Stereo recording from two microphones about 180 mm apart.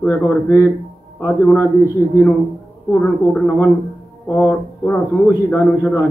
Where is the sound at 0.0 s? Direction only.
10° left (ahead or behind).